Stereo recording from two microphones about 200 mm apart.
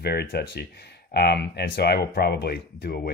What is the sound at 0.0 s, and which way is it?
Speech, 50° left (ahead or behind).